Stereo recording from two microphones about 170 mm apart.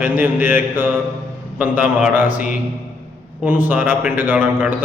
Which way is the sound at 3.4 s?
10° right (ahead or behind).